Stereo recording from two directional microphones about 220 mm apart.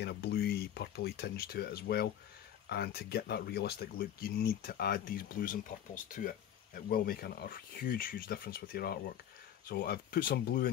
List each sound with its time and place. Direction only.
0.0 s speech: 45° left (ahead or behind)